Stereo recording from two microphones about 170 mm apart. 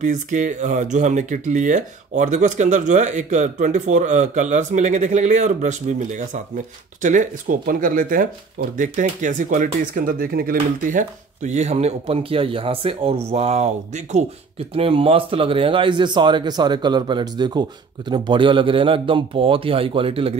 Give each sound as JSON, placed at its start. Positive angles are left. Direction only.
{"t": 0.0, "sound": "a man's voice", "side_deg": -50}